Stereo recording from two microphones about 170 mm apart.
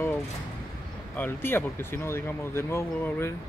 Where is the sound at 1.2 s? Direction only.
10° left (ahead or behind).